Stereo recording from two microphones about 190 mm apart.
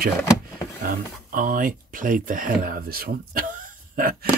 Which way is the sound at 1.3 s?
45° right (ahead or behind).